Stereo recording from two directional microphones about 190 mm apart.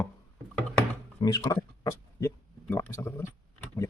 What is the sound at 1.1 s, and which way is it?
Speech, 20° left (ahead or behind).